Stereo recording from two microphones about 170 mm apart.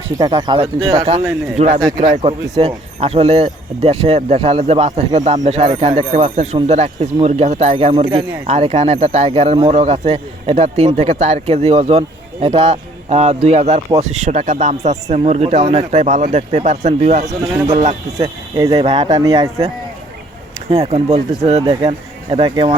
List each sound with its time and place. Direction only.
0.2 s speech: 25° right (ahead or behind)
18.2 s speech: 20° right (ahead or behind)
18.7 s speech: 35° right (ahead or behind)
20.7 s speech: 40° right (ahead or behind)